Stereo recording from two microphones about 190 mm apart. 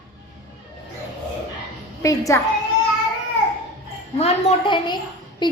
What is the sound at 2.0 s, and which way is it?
Speech, 15° left (ahead or behind).